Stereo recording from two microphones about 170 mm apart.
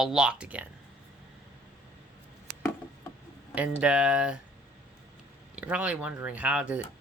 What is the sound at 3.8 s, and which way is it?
Speech, 5° right (ahead or behind).